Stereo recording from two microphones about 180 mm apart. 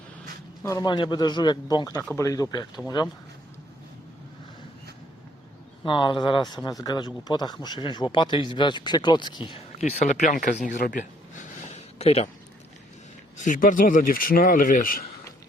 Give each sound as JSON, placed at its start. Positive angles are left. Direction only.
{"t": 0.6, "sound": "speech", "side_deg": 20}
{"t": 5.8, "sound": "speech", "side_deg": 25}
{"t": 9.7, "sound": "speech", "side_deg": 40}
{"t": 13.3, "sound": "speech", "side_deg": 45}